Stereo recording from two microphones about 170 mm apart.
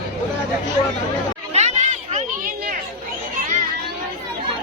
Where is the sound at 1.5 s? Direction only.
40° right (ahead or behind).